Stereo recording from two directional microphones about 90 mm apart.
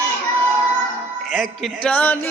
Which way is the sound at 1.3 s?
5° left (ahead or behind).